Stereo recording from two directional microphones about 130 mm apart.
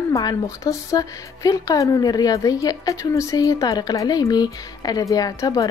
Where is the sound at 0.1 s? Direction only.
30° left (ahead or behind).